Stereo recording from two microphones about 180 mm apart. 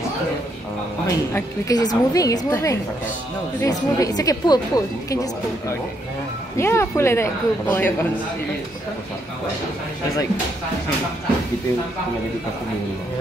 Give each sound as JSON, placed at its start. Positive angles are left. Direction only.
{"t": 1.3, "sound": "a woman's voice", "side_deg": 20}